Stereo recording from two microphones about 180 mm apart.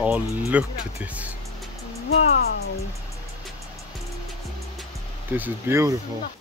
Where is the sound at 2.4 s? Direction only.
60° left (ahead or behind).